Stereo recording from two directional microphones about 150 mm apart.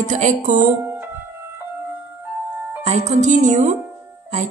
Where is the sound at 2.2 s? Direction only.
15° right (ahead or behind).